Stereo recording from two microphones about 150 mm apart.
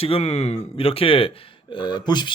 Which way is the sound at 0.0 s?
40° left (ahead or behind).